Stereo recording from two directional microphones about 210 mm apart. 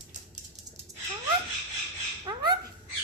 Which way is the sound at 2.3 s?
20° right (ahead or behind).